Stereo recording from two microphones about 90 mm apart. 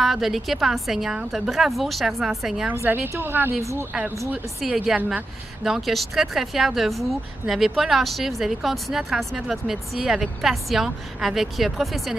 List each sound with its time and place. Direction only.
0.0 s a woman's voice: centre (ahead or behind)
2.7 s a woman's voice: 25° right (ahead or behind)
4.6 s a woman's voice: 5° right (ahead or behind)